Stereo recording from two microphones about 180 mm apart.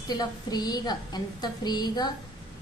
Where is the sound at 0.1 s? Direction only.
20° left (ahead or behind).